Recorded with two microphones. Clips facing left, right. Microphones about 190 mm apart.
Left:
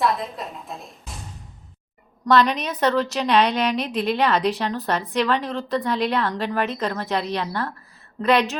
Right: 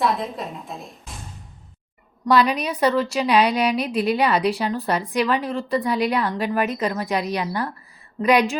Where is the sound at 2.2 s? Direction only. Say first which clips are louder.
Even; 10° right (ahead or behind).